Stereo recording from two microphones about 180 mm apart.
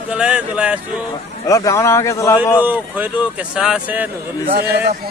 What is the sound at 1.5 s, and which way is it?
Speech, 20° left (ahead or behind).